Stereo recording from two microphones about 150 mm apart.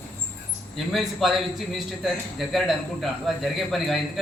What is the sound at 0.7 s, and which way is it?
A man's voice, centre (ahead or behind).